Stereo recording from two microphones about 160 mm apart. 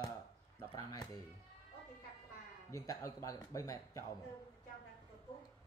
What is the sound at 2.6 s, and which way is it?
Speech, 20° left (ahead or behind).